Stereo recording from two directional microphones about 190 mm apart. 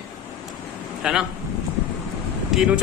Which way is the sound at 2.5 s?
Centre (ahead or behind).